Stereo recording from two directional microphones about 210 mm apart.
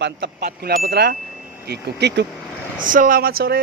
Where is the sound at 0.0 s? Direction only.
55° right (ahead or behind).